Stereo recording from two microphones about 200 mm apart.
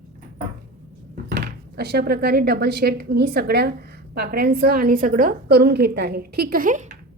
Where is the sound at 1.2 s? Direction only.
50° right (ahead or behind).